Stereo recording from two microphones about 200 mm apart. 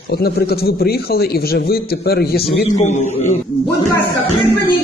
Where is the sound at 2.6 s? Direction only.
35° left (ahead or behind).